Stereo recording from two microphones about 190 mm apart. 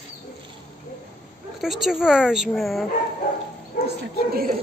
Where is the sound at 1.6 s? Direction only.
Centre (ahead or behind).